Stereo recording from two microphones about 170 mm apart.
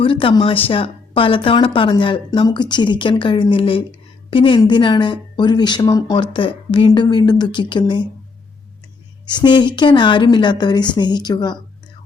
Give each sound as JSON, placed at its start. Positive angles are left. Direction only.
{"t": 0.0, "sound": "a woman's voice", "side_deg": 30}
{"t": 9.2, "sound": "a woman's voice", "side_deg": 25}